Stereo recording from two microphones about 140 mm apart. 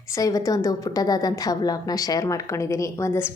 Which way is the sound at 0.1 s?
25° left (ahead or behind).